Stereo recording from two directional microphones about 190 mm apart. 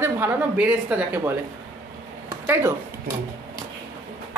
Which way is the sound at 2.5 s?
15° right (ahead or behind).